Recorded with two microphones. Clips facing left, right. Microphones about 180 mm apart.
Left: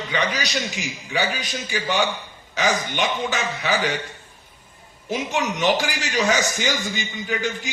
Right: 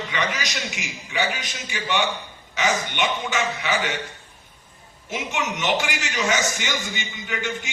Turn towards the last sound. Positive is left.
turn(degrees=35)  # may be behind; listen again after turning